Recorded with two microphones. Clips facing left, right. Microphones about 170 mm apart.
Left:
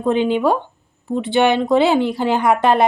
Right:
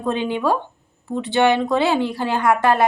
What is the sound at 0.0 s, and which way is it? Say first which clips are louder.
A woman's voice: left 5 dB; 20° left (ahead or behind).